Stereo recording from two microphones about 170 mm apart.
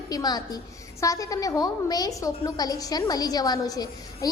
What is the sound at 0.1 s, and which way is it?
A woman's voice, 25° left (ahead or behind).